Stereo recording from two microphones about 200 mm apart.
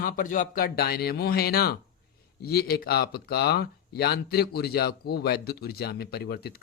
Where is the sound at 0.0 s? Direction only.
45° left (ahead or behind).